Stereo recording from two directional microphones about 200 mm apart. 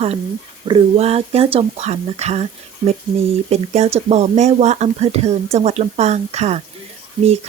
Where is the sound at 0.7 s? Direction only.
30° right (ahead or behind).